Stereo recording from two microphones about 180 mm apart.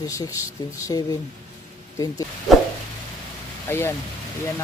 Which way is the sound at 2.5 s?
Centre (ahead or behind).